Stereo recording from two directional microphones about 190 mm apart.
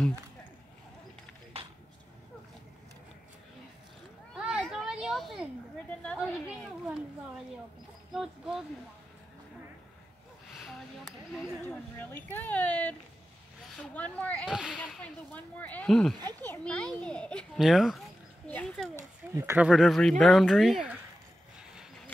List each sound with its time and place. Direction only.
4.4 s a sound: 5° right (ahead or behind)
8.1 s a child's voice: centre (ahead or behind)
10.6 s speech: centre (ahead or behind)
11.3 s speech: 10° left (ahead or behind)
14.5 s speech: 5° right (ahead or behind)
14.8 s speech: 5° left (ahead or behind)
16.2 s a child's voice: 20° right (ahead or behind)
16.4 s a child's voice: 5° left (ahead or behind)
19.3 s a child's voice: 10° right (ahead or behind)